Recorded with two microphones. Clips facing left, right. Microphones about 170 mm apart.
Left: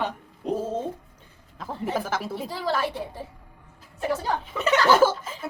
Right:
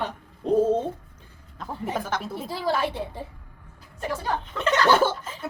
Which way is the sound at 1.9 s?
5° left (ahead or behind).